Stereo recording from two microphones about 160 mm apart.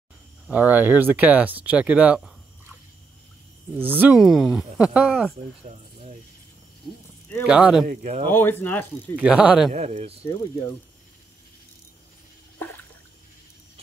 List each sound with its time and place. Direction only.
0.5 s speech: 10° right (ahead or behind)
3.7 s speech: 10° right (ahead or behind)
5.7 s speech: 45° right (ahead or behind)
7.4 s speech: 5° right (ahead or behind)
7.8 s speech: 50° right (ahead or behind)
8.3 s speech: 15° left (ahead or behind)
9.1 s speech: 5° right (ahead or behind)
9.7 s speech: 50° right (ahead or behind)